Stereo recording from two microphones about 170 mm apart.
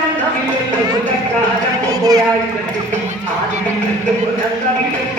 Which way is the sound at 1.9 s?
20° right (ahead or behind).